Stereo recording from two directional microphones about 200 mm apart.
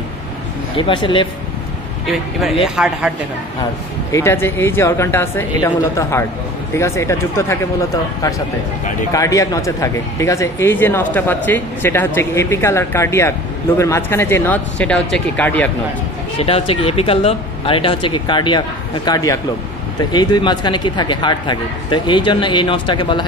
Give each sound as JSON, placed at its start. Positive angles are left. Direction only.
{"t": 0.7, "sound": "speech", "side_deg": 25}
{"t": 2.6, "sound": "speech", "side_deg": -5}
{"t": 4.1, "sound": "speech", "side_deg": 10}
{"t": 9.1, "sound": "speech", "side_deg": 15}
{"t": 16.3, "sound": "speech", "side_deg": 30}